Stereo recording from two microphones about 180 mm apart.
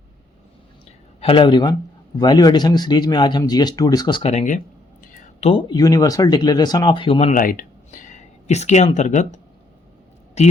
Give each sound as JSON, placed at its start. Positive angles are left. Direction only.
{"t": 1.2, "sound": "a man's voice", "side_deg": 30}
{"t": 7.4, "sound": "speech", "side_deg": 50}
{"t": 10.4, "sound": "speech", "side_deg": 35}